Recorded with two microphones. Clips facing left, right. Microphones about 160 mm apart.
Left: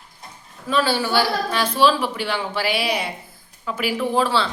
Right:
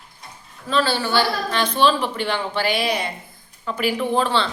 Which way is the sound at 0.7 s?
10° left (ahead or behind).